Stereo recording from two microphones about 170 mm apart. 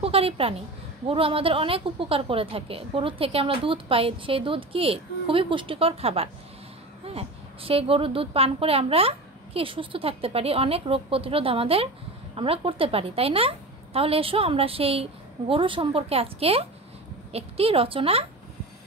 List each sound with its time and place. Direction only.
0.0 s a woman's voice: 35° right (ahead or behind)